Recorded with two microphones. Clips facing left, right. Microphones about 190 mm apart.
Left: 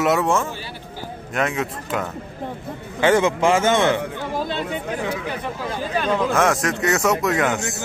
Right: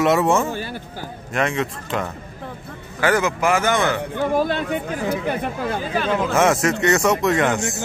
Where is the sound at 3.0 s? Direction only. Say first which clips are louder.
Left 2 dB; 25° left (ahead or behind).